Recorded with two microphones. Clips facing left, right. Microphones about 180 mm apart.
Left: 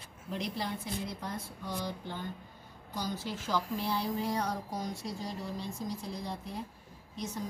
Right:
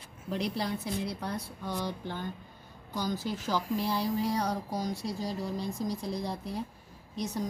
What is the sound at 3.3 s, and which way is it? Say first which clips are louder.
Speech: right 3 dB; 40° right (ahead or behind).